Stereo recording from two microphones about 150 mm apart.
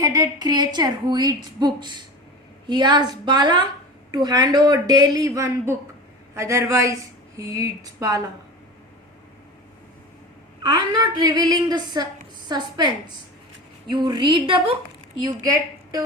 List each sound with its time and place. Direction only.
0.0 s a woman's voice: 25° right (ahead or behind)
10.6 s a woman's voice: 30° right (ahead or behind)
13.9 s a woman's voice: 30° right (ahead or behind)